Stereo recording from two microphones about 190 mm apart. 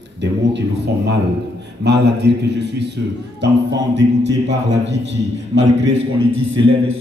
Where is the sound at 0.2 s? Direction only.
65° right (ahead or behind).